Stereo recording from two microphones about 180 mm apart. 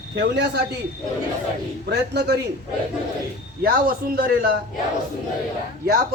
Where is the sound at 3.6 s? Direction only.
55° right (ahead or behind).